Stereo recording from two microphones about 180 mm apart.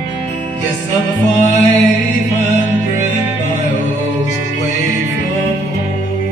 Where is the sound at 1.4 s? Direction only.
40° left (ahead or behind).